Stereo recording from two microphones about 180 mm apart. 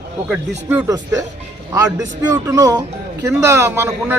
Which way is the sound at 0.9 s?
20° right (ahead or behind).